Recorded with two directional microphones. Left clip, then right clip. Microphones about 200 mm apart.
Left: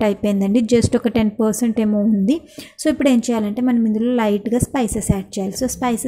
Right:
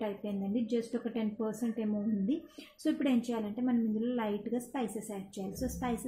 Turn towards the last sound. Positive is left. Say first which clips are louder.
# left 16 dB
turn(degrees=35)  # may be behind; listen again after turning